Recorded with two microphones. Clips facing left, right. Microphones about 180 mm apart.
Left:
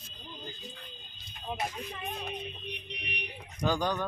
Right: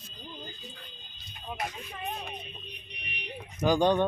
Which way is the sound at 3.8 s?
25° right (ahead or behind).